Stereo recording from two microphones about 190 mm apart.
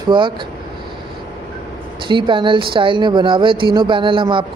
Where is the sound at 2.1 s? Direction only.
25° right (ahead or behind).